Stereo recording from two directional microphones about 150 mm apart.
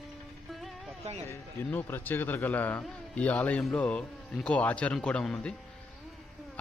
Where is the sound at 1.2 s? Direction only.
15° left (ahead or behind).